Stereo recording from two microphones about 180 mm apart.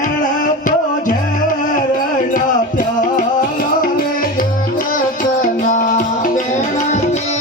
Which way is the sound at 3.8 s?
50° left (ahead or behind).